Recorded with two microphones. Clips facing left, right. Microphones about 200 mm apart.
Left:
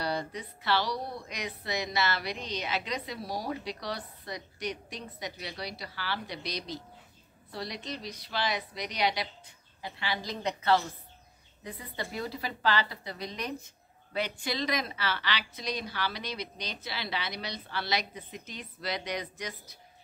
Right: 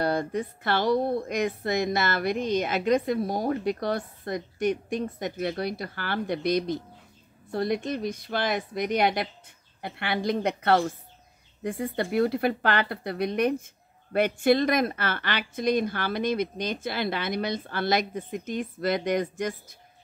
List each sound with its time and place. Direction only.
0.0 s speech: 50° right (ahead or behind)